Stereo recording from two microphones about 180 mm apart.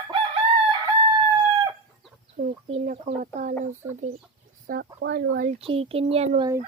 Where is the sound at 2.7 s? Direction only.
40° right (ahead or behind).